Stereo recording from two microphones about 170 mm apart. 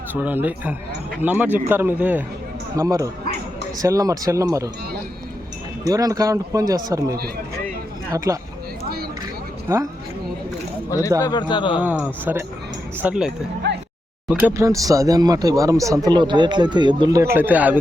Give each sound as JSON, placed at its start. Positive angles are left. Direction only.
{"t": 0.1, "sound": "a man's voice", "side_deg": -10}
{"t": 2.7, "sound": "speech", "side_deg": -20}
{"t": 5.8, "sound": "a man's voice", "side_deg": -20}
{"t": 9.7, "sound": "a man's voice", "side_deg": -15}
{"t": 10.8, "sound": "speech", "side_deg": 20}
{"t": 11.8, "sound": "a man's voice", "side_deg": -5}
{"t": 13.6, "sound": "a sound", "side_deg": -90}
{"t": 14.4, "sound": "speech", "side_deg": -15}